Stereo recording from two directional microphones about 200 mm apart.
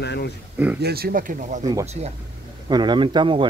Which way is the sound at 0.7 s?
50° right (ahead or behind).